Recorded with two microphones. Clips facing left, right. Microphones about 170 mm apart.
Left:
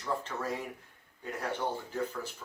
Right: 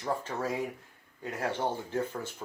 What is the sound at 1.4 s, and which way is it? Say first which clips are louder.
Speech: right 3 dB; 50° right (ahead or behind).